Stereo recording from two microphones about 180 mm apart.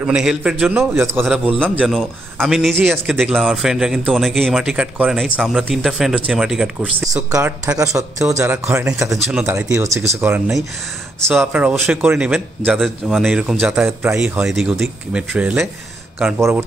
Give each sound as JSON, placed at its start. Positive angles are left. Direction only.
{"t": 0.0, "sound": "speech", "side_deg": -5}
{"t": 1.2, "sound": "speech", "side_deg": 0}
{"t": 7.2, "sound": "speech", "side_deg": -15}
{"t": 8.9, "sound": "speech", "side_deg": 0}
{"t": 9.4, "sound": "speech", "side_deg": -15}
{"t": 16.3, "sound": "speech", "side_deg": -15}